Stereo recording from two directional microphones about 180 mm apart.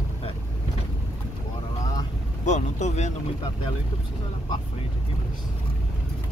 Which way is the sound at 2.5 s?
40° left (ahead or behind).